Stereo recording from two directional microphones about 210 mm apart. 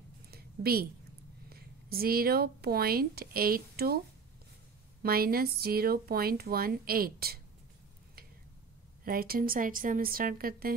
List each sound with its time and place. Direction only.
0.3 s a sound: 45° right (ahead or behind)
1.5 s speech: 45° right (ahead or behind)
5.0 s speech: 45° right (ahead or behind)
9.0 s speech: 45° right (ahead or behind)